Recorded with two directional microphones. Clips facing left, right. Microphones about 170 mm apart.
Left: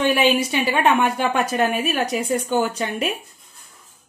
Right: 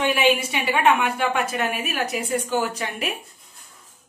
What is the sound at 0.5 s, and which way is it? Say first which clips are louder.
A woman's voice: left 2 dB; 35° left (ahead or behind).